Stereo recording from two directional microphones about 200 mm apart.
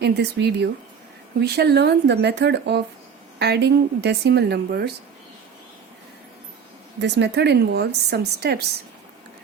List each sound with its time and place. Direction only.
0.0 s a woman's voice: 55° right (ahead or behind)
7.0 s a woman's voice: 60° right (ahead or behind)